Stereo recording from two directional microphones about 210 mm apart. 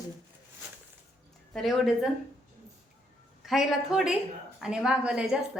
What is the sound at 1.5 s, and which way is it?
Speech, centre (ahead or behind).